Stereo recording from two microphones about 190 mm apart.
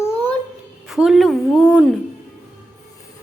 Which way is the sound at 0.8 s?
Centre (ahead or behind).